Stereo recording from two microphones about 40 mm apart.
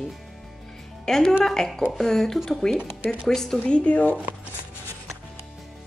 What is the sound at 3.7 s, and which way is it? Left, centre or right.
Speech, left.